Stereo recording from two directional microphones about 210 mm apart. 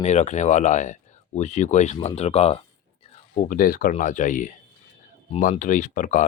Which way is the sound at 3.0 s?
35° left (ahead or behind).